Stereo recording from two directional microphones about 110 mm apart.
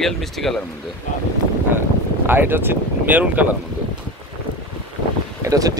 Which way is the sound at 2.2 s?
20° right (ahead or behind).